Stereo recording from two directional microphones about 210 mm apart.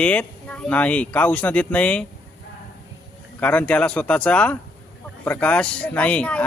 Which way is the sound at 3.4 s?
5° left (ahead or behind).